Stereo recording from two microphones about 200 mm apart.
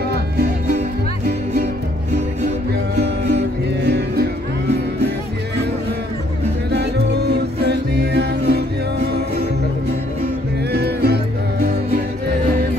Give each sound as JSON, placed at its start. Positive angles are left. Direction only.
{"t": 3.8, "sound": "music", "side_deg": -55}
{"t": 6.7, "sound": "music", "side_deg": -55}
{"t": 10.7, "sound": "music", "side_deg": -55}